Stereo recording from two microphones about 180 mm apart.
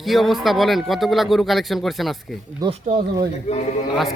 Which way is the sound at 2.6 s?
20° right (ahead or behind).